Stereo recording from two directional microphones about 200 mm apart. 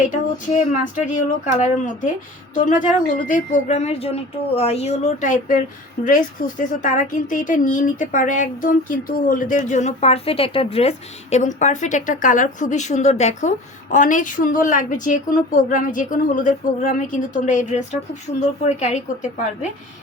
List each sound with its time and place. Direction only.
0.1 s speech: 40° left (ahead or behind)